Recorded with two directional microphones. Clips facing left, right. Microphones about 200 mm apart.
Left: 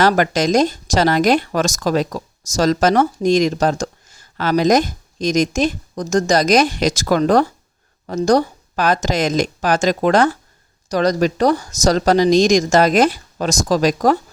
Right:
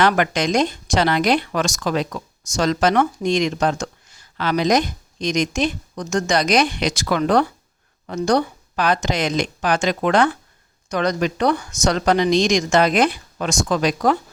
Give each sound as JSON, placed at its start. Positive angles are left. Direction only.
{"t": 0.0, "sound": "speech", "side_deg": 40}